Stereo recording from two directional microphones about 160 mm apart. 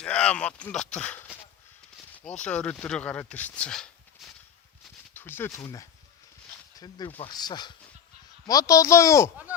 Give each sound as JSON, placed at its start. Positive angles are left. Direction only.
{"t": 0.0, "sound": "speech", "side_deg": 5}